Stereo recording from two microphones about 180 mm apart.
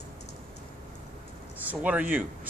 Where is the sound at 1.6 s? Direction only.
10° right (ahead or behind).